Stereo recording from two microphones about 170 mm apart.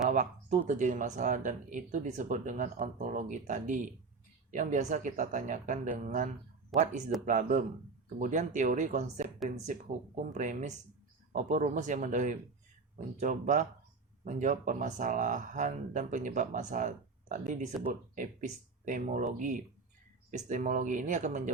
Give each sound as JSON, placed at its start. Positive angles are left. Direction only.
{"t": 0.1, "sound": "speech", "side_deg": -45}
{"t": 6.7, "sound": "speech", "side_deg": 0}
{"t": 7.3, "sound": "speech", "side_deg": -50}